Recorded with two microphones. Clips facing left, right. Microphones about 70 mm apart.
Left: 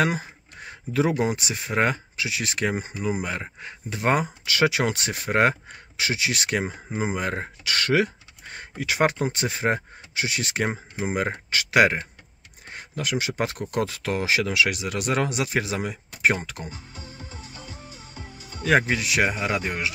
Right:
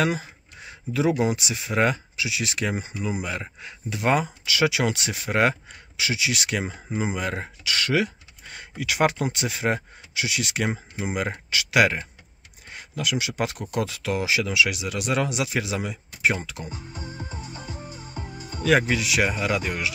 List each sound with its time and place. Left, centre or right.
0.0 s speech: left
18.6 s speech: left